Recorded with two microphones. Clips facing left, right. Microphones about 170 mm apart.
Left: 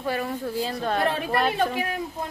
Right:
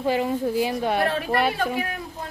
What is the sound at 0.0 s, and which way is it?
Speech, 15° right (ahead or behind).